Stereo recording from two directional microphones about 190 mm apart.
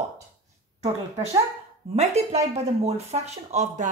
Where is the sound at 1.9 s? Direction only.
35° right (ahead or behind).